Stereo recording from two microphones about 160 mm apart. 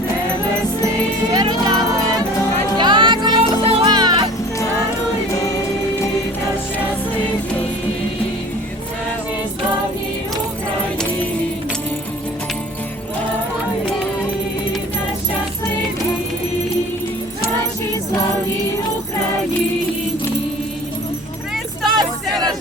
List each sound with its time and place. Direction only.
1.3 s music: 25° right (ahead or behind)
2.7 s music: 30° right (ahead or behind)
5.3 s music: 20° left (ahead or behind)
21.8 s a sound: 25° right (ahead or behind)